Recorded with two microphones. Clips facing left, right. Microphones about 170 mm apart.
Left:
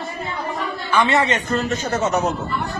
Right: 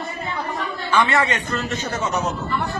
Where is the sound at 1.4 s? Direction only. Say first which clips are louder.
Left 4 dB; 40° left (ahead or behind).